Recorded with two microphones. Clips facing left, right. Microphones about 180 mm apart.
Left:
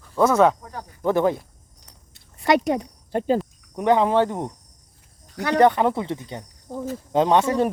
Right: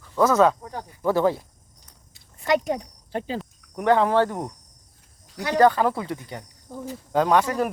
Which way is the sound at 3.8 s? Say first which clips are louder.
Left 1 dB; 20° left (ahead or behind).